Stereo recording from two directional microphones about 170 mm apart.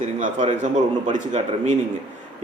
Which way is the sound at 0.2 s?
45° right (ahead or behind).